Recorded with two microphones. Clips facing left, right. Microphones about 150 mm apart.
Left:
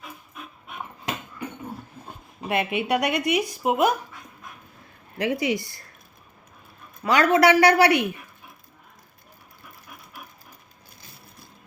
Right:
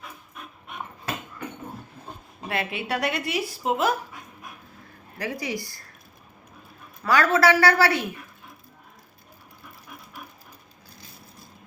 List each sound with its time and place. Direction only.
0.7 s dog: centre (ahead or behind)
2.5 s speech: 20° left (ahead or behind)
5.1 s speech: 20° left (ahead or behind)
7.0 s speech: 20° left (ahead or behind)